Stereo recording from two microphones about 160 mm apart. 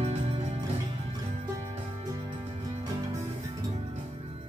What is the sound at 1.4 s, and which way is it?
Music, 20° right (ahead or behind).